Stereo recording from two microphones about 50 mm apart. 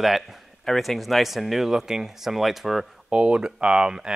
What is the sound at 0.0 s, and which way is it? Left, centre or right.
Speech, centre.